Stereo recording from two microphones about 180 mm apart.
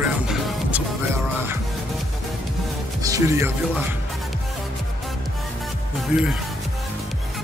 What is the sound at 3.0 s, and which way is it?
Speech, 20° right (ahead or behind).